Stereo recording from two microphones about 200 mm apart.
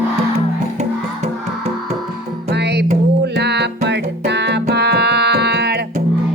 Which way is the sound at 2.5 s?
55° right (ahead or behind).